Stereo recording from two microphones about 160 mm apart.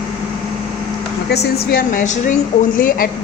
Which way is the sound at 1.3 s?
80° left.